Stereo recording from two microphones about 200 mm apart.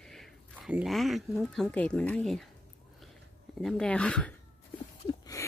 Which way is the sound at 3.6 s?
5° left (ahead or behind).